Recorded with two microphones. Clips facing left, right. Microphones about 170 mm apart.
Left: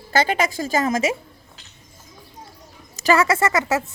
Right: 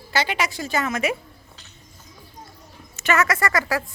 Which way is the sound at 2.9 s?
35° left (ahead or behind).